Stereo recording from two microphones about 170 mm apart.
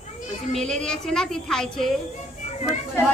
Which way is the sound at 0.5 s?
5° left (ahead or behind).